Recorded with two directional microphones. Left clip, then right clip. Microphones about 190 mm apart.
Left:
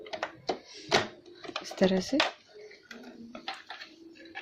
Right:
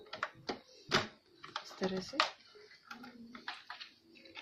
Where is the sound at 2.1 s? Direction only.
55° left (ahead or behind).